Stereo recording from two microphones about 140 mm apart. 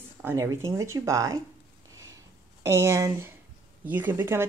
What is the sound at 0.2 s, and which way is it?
Speech, 20° right (ahead or behind).